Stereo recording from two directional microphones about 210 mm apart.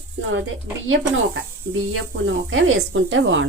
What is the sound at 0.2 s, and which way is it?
Speech, 65° right (ahead or behind).